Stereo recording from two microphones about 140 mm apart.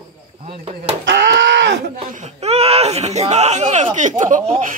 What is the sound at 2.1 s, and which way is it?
Speech, 50° right (ahead or behind).